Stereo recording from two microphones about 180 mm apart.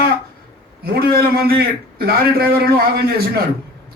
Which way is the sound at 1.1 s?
60° right (ahead or behind).